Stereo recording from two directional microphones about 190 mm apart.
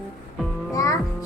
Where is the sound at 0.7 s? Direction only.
15° left (ahead or behind).